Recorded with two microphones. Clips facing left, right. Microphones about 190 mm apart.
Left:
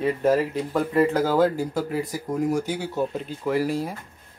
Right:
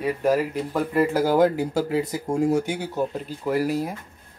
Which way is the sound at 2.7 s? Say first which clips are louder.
Even; 15° right (ahead or behind).